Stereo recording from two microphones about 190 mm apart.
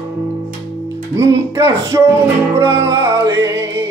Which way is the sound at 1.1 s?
15° right (ahead or behind).